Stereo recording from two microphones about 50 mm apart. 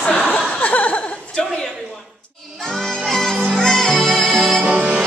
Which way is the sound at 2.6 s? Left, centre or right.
Centre.